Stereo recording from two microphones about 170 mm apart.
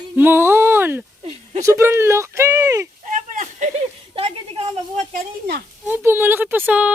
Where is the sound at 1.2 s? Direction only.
40° right (ahead or behind).